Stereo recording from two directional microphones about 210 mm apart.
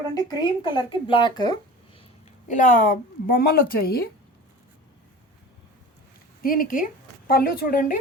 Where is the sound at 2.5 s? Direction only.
35° left (ahead or behind).